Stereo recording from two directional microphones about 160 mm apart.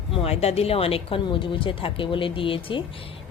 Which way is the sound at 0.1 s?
35° left (ahead or behind).